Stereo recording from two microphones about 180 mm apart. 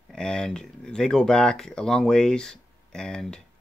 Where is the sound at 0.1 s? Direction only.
5° left (ahead or behind).